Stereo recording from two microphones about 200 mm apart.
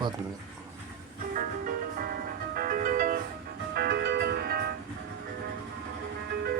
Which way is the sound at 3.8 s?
55° right (ahead or behind).